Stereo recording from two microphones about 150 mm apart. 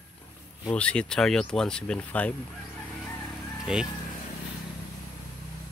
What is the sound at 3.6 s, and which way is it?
Speech, 5° right (ahead or behind).